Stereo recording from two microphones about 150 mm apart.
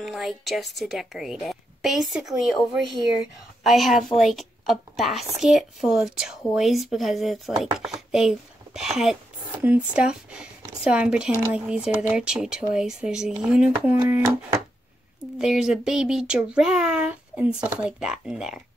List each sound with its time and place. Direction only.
0.0 s a woman's voice: centre (ahead or behind)
15.3 s a woman's voice: 5° right (ahead or behind)